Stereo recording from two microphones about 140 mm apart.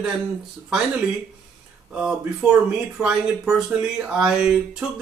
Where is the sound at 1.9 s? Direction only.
5° right (ahead or behind).